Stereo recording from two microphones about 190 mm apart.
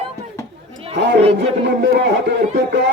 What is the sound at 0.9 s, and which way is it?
Chatter, 65° right (ahead or behind).